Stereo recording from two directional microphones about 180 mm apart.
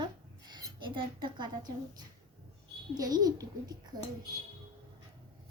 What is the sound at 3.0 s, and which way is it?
Speech, 20° right (ahead or behind).